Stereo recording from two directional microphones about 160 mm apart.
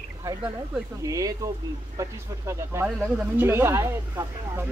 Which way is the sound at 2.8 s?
5° right (ahead or behind).